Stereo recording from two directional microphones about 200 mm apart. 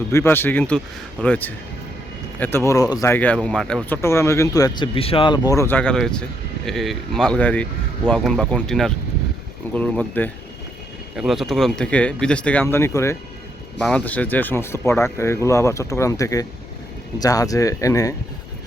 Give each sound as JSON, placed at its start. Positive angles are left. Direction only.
{"t": 0.1, "sound": "speech", "side_deg": 10}
{"t": 13.7, "sound": "speech", "side_deg": 5}